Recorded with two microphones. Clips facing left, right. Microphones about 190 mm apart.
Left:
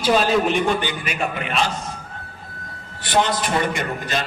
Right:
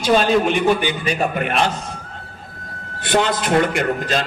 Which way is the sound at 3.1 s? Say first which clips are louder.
Right 2 dB; 65° right (ahead or behind).